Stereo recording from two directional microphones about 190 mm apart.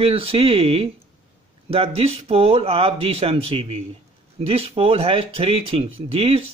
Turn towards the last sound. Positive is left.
turn(degrees=-30)  # may be behind; listen again after turning